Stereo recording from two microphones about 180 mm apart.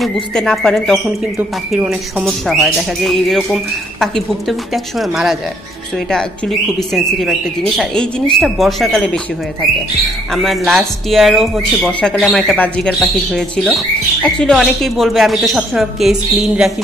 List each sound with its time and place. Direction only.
0.0 s speech: centre (ahead or behind)
1.7 s speech: 10° right (ahead or behind)
2.2 s speech: centre (ahead or behind)
6.9 s speech: centre (ahead or behind)